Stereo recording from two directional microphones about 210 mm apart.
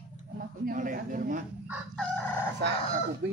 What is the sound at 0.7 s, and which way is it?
Speech, 40° right (ahead or behind).